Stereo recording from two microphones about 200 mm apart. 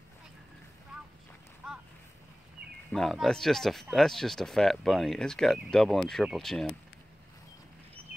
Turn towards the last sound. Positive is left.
turn(degrees=0)  # may be behind; listen again after turning